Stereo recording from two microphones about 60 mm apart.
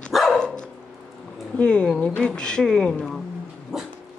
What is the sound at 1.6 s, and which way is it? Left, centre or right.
Speech, centre.